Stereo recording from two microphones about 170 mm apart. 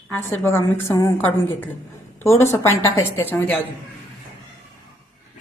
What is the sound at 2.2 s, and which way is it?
A woman's voice, 15° left (ahead or behind).